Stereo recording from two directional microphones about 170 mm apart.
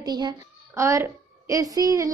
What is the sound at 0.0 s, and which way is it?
A child's voice, 25° right (ahead or behind).